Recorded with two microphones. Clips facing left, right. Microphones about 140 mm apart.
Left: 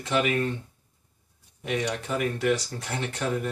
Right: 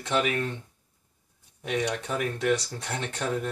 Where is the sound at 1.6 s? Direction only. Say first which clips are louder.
Even; centre (ahead or behind).